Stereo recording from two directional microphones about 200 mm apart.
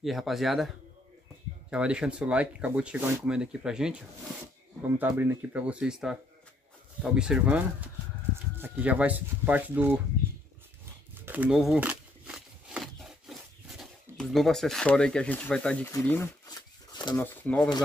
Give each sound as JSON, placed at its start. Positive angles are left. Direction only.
{"t": 0.0, "sound": "speech", "side_deg": 0}
{"t": 1.7, "sound": "speech", "side_deg": -5}
{"t": 4.9, "sound": "speech", "side_deg": -10}
{"t": 11.2, "sound": "a sound", "side_deg": -10}
{"t": 17.3, "sound": "speech", "side_deg": 10}